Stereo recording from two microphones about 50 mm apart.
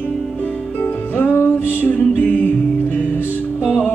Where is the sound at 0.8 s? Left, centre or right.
Left.